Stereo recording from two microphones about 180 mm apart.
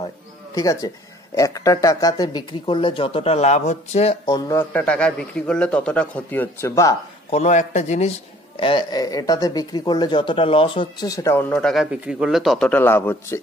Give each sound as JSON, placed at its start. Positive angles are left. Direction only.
{"t": 0.6, "sound": "speech", "side_deg": 20}
{"t": 4.3, "sound": "a man's voice", "side_deg": 15}
{"t": 7.2, "sound": "speech", "side_deg": 40}
{"t": 8.5, "sound": "speech", "side_deg": 25}